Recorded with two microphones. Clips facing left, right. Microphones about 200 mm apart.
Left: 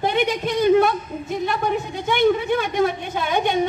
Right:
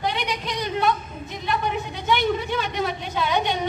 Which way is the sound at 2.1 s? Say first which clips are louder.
Left 5 dB; 50° left (ahead or behind).